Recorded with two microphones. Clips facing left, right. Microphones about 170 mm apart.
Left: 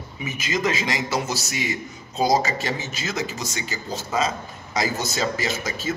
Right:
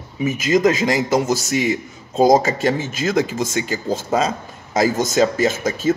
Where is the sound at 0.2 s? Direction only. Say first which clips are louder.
Right 10 dB; 45° right (ahead or behind).